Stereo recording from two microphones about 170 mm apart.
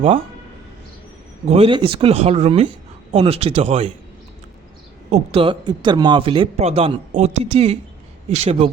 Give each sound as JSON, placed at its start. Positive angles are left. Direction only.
{"t": 1.5, "sound": "speech", "side_deg": -35}
{"t": 5.1, "sound": "speech", "side_deg": -35}